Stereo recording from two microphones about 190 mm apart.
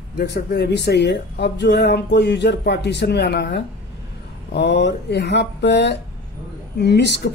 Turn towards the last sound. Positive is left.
turn(degrees=65)  # may be behind; listen again after turning